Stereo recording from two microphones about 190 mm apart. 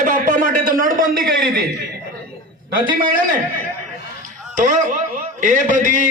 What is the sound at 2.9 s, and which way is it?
Speech, 45° right (ahead or behind).